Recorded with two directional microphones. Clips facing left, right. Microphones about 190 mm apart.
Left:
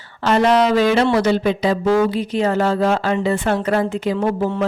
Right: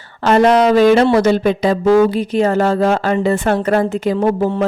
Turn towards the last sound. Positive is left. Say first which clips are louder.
# right 4 dB
turn(degrees=-40)  # may be behind; listen again after turning